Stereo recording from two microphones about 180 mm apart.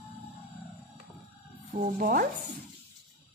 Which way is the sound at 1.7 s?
50° right (ahead or behind).